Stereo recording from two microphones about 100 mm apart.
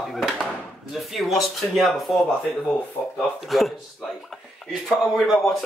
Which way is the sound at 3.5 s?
Centre (ahead or behind).